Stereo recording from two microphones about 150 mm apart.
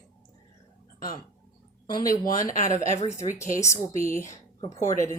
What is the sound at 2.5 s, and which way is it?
Speech, 60° left (ahead or behind).